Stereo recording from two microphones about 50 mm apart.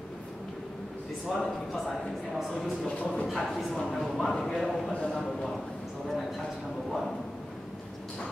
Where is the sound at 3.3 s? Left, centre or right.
Centre.